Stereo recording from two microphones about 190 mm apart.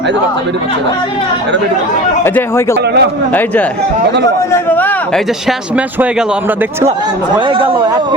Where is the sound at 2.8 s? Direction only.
60° right (ahead or behind).